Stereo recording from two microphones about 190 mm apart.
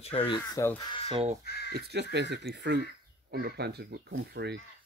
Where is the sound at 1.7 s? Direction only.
60° right (ahead or behind).